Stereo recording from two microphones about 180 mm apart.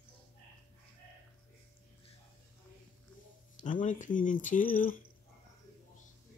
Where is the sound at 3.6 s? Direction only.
45° left (ahead or behind).